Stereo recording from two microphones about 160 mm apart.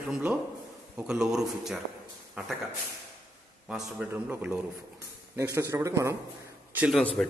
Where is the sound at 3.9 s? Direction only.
10° right (ahead or behind).